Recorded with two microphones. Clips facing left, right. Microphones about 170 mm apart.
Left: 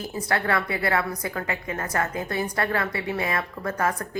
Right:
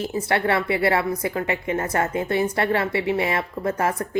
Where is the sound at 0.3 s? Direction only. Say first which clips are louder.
Right 3 dB; 25° right (ahead or behind).